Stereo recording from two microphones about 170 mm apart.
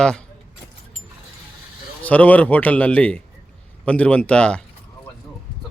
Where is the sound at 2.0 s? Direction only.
10° left (ahead or behind).